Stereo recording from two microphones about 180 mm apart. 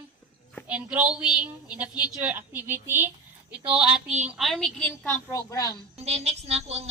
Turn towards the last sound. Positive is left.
turn(degrees=-35)  # may be behind; listen again after turning